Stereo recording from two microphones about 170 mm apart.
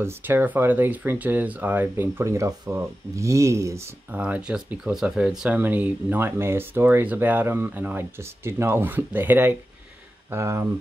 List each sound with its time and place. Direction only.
0.0 s speech: 10° right (ahead or behind)